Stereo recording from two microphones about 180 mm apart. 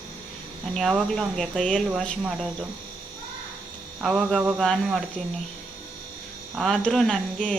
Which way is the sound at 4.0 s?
Centre (ahead or behind).